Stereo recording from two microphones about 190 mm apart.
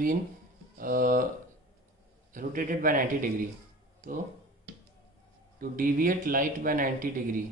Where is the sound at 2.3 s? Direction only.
45° right (ahead or behind).